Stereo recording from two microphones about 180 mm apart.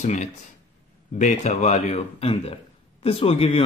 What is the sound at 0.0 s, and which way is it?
A man's voice, 40° left (ahead or behind).